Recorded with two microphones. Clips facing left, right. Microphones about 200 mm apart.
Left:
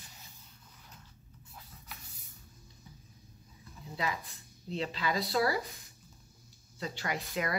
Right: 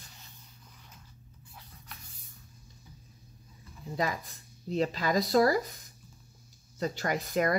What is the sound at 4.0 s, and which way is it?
Speech, 45° right (ahead or behind).